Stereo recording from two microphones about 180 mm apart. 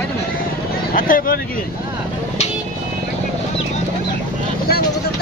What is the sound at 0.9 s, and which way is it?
Speech, 50° left (ahead or behind).